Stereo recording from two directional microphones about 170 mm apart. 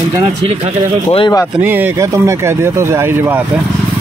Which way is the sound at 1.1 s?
25° left (ahead or behind).